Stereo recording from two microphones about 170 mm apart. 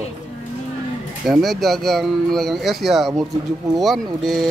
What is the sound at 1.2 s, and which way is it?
Speech, centre (ahead or behind).